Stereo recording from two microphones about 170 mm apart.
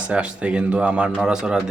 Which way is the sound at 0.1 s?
5° right (ahead or behind).